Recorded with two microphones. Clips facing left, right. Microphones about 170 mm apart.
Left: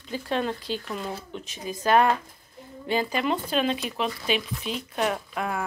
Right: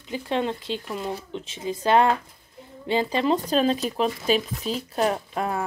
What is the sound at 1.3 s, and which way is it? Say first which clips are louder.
Speech: right 4 dB; 25° right (ahead or behind).